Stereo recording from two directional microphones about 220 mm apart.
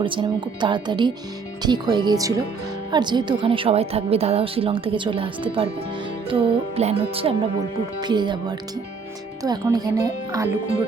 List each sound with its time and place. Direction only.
0.0 s a woman's voice: 25° right (ahead or behind)